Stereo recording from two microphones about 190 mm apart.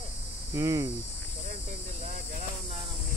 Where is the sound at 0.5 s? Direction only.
15° right (ahead or behind).